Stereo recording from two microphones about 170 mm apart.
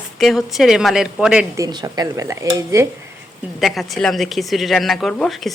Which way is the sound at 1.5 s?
20° right (ahead or behind).